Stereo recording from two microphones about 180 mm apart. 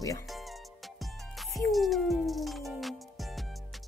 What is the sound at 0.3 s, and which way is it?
Music, centre (ahead or behind).